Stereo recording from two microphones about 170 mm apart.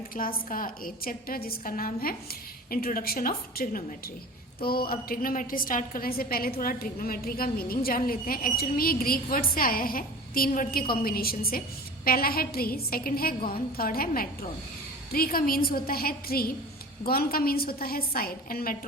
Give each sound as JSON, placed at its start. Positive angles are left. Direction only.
{"t": 0.1, "sound": "a woman's voice", "side_deg": 55}